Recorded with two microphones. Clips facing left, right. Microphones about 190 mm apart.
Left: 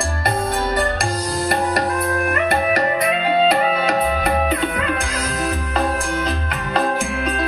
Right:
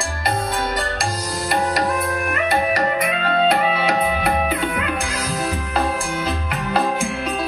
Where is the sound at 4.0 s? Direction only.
10° right (ahead or behind).